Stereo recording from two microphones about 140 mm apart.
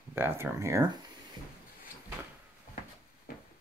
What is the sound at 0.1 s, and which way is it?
Speech, 15° right (ahead or behind).